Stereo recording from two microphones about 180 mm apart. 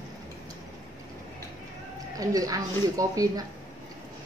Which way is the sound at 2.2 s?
20° right (ahead or behind).